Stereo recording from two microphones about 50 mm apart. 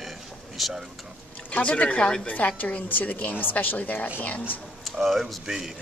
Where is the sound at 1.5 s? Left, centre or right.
Left.